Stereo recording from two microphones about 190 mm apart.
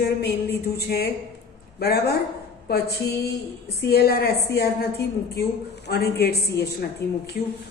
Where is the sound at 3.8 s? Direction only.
55° left (ahead or behind).